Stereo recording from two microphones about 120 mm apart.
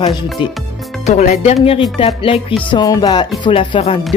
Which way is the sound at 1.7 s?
50° left (ahead or behind).